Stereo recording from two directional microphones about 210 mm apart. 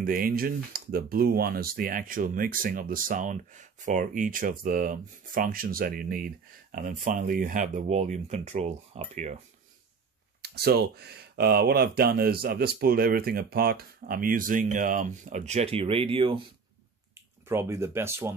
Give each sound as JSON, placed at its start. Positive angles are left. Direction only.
{"t": 0.0, "sound": "speech", "side_deg": -45}
{"t": 10.4, "sound": "speech", "side_deg": -50}
{"t": 17.5, "sound": "speech", "side_deg": -10}